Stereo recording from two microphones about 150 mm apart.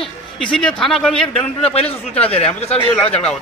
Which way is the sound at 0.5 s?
5° left (ahead or behind).